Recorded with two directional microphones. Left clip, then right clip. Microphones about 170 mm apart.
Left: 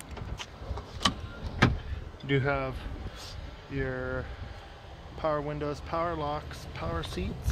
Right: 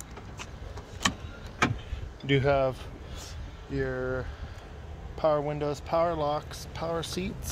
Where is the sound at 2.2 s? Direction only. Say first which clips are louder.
Right 5 dB; 75° right (ahead or behind).